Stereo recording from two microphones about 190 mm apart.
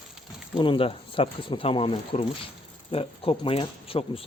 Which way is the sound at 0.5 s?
25° left (ahead or behind).